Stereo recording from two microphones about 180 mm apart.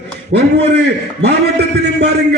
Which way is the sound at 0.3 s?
70° right (ahead or behind).